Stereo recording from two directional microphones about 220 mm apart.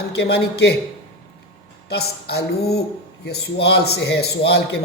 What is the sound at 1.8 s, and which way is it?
Speech, 45° left (ahead or behind).